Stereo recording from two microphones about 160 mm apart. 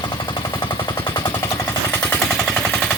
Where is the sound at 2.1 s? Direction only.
5° left (ahead or behind).